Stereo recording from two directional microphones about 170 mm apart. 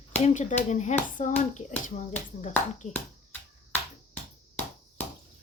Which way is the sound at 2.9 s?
10° left (ahead or behind).